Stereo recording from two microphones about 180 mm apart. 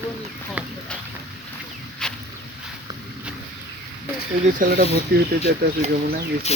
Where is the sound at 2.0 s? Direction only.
5° left (ahead or behind).